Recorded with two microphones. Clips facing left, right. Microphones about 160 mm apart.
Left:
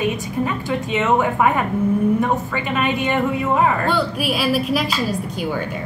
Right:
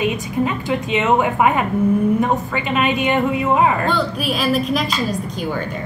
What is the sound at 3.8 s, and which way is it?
A woman's voice, 10° left (ahead or behind).